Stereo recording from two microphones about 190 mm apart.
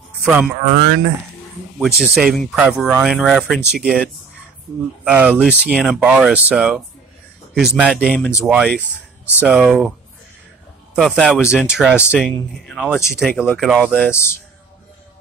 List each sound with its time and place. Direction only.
0.2 s speech: 5° right (ahead or behind)
0.7 s speech: 50° right (ahead or behind)
1.8 s speech: centre (ahead or behind)
8.7 s speech: 10° left (ahead or behind)
9.4 s speech: 5° right (ahead or behind)
11.0 s speech: centre (ahead or behind)
14.1 s speech: 15° left (ahead or behind)